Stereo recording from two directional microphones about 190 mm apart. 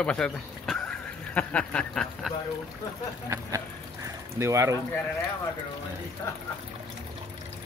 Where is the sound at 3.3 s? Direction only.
15° right (ahead or behind).